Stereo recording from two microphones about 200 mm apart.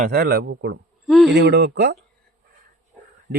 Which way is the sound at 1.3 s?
60° right (ahead or behind).